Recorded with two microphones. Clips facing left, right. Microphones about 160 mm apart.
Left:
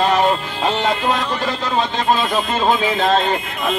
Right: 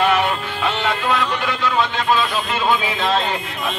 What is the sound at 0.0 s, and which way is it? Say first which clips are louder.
Speech: left 2 dB; 35° left (ahead or behind).